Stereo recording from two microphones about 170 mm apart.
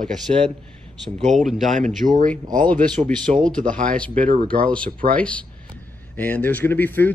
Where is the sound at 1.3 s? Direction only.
Centre (ahead or behind).